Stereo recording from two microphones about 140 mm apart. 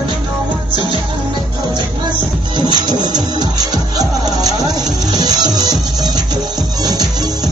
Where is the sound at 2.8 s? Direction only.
30° right (ahead or behind).